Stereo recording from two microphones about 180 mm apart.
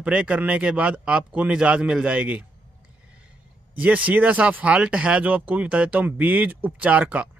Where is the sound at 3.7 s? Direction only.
10° right (ahead or behind).